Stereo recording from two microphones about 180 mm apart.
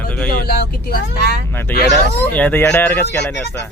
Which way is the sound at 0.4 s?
60° left (ahead or behind).